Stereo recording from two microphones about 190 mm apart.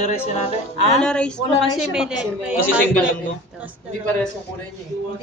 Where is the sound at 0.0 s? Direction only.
35° left (ahead or behind).